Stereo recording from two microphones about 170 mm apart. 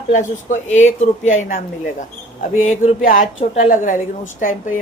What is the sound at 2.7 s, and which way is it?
Speech, 50° left (ahead or behind).